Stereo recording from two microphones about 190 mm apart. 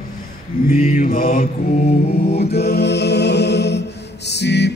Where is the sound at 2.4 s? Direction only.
55° left (ahead or behind).